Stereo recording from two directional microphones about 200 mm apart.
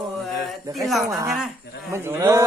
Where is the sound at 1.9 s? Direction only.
10° right (ahead or behind).